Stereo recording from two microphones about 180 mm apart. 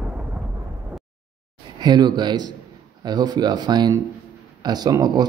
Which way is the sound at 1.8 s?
25° right (ahead or behind).